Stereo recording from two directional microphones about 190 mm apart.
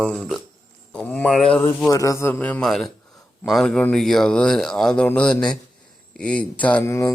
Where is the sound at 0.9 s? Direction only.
5° left (ahead or behind).